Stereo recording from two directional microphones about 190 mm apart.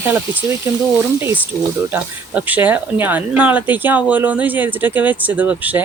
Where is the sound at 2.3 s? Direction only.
10° right (ahead or behind).